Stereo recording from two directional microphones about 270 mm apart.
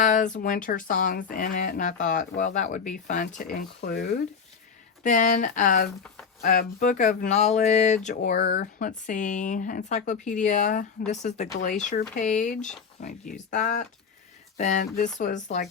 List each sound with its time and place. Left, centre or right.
0.0 s speech: left